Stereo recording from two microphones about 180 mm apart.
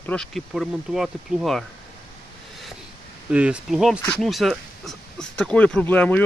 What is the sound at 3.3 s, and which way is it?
Speech, 5° right (ahead or behind).